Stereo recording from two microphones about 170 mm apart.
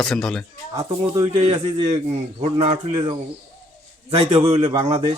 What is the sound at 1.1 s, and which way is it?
Speech, 30° right (ahead or behind).